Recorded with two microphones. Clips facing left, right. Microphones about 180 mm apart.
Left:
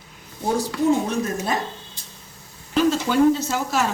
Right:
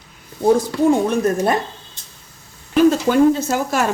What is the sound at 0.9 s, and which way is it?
Speech, 55° right (ahead or behind).